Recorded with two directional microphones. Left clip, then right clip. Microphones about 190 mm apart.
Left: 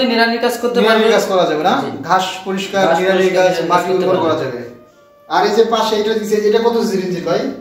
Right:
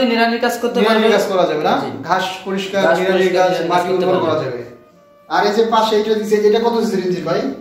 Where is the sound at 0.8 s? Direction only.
5° left (ahead or behind).